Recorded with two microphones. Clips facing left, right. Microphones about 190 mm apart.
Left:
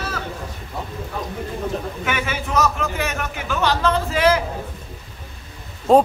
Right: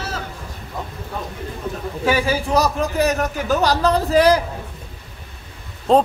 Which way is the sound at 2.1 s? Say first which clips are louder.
Right 8 dB; 35° right (ahead or behind).